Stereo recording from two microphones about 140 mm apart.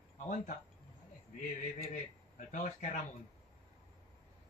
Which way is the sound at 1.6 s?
65° left (ahead or behind).